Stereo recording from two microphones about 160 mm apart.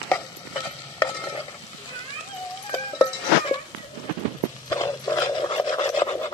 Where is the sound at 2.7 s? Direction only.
30° left (ahead or behind).